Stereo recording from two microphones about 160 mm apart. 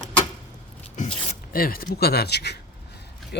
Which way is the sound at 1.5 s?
65° left (ahead or behind).